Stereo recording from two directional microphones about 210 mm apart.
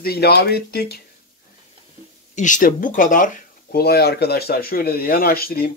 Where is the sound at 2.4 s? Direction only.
40° left (ahead or behind).